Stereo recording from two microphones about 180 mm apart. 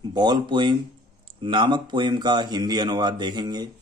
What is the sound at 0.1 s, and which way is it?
Speech, 25° right (ahead or behind).